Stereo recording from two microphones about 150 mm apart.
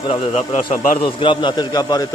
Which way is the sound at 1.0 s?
30° left (ahead or behind).